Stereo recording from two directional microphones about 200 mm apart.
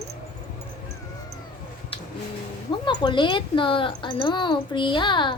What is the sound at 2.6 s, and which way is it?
Speech, 20° left (ahead or behind).